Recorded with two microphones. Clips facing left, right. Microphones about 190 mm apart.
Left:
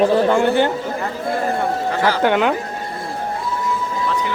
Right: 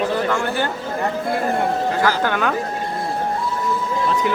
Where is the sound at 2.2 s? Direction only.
20° left (ahead or behind).